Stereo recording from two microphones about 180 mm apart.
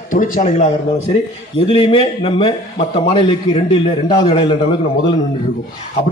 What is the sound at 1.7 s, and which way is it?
A man's voice, 30° left (ahead or behind).